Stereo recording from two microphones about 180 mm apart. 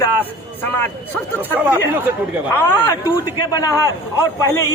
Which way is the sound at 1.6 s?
10° right (ahead or behind).